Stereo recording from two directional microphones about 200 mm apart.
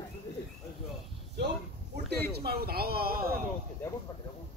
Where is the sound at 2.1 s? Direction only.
50° right (ahead or behind).